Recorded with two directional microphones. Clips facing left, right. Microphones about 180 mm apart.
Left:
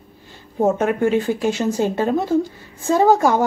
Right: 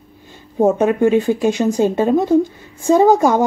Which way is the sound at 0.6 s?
15° right (ahead or behind).